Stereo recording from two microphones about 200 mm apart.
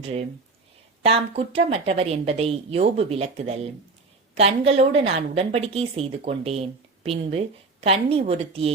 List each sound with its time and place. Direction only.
0.0 s a woman's voice: 30° right (ahead or behind)